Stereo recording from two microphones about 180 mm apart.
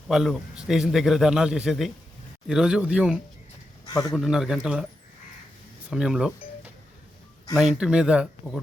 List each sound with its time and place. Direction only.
0.1 s a man's voice: centre (ahead or behind)
3.8 s a man's voice: 20° left (ahead or behind)
4.1 s a man's voice: centre (ahead or behind)
5.9 s a man's voice: 5° right (ahead or behind)
7.5 s a man's voice: 5° right (ahead or behind)